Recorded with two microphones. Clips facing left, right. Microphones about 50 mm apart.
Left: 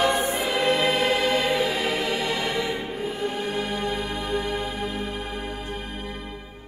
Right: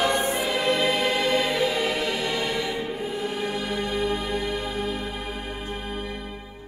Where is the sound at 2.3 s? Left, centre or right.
Left.